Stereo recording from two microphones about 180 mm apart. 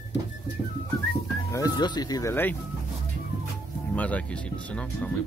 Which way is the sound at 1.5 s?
20° left (ahead or behind).